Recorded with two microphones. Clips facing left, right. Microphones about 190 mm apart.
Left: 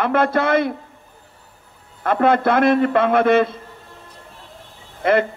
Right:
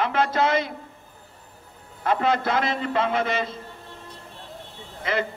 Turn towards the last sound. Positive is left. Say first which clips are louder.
# left 9 dB
turn(degrees=55)  # may be behind; listen again after turning